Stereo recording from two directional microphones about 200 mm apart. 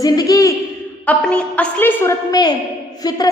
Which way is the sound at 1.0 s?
5° left (ahead or behind).